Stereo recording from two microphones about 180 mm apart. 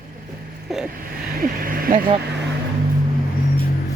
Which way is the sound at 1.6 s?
55° right (ahead or behind).